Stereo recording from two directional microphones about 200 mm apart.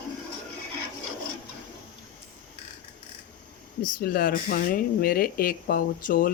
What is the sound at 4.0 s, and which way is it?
Speech, 50° left (ahead or behind).